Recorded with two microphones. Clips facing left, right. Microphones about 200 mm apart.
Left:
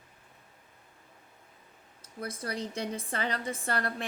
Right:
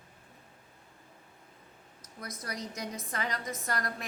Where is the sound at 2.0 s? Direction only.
30° left (ahead or behind).